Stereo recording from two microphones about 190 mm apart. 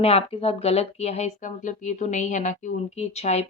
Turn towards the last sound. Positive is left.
turn(degrees=35)  # may be behind; listen again after turning